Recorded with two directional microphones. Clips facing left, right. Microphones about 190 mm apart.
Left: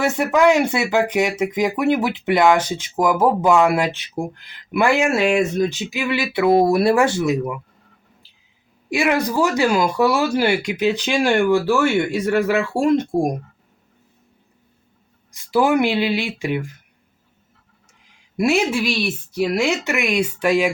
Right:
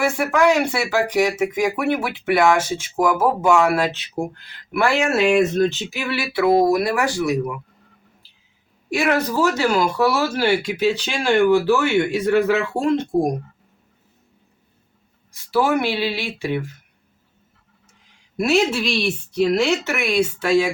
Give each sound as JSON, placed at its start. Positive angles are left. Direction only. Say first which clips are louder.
{"t": 0.0, "sound": "speech", "louder": "left 2 dB", "side_deg": 20}
{"t": 8.9, "sound": "speech", "louder": "left 1 dB", "side_deg": 15}
{"t": 15.3, "sound": "speech", "louder": "left 2 dB", "side_deg": 15}
{"t": 18.3, "sound": "speech", "louder": "even", "side_deg": 15}